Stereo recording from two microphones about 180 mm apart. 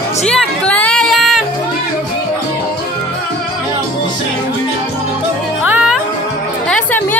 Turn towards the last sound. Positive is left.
turn(degrees=5)  # may be behind; listen again after turning